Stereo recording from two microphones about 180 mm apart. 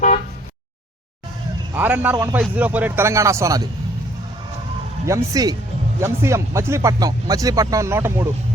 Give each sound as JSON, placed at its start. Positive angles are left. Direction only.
{"t": 1.7, "sound": "speech", "side_deg": -10}
{"t": 5.0, "sound": "speech", "side_deg": -20}